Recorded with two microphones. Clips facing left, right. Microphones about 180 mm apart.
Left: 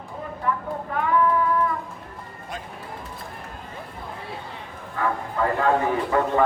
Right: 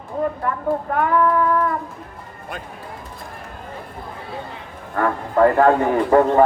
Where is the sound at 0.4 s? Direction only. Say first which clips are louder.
Right 5 dB; 55° right (ahead or behind).